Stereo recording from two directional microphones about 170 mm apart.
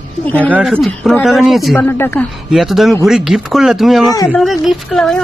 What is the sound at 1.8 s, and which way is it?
Speech, 10° left (ahead or behind).